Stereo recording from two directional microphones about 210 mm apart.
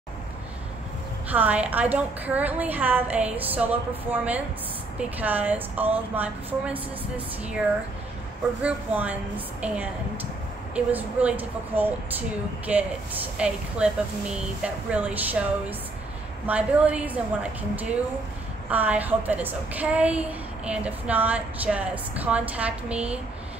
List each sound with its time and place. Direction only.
1.3 s speech: 5° right (ahead or behind)
8.6 s speech: 5° right (ahead or behind)
16.4 s speech: 5° right (ahead or behind)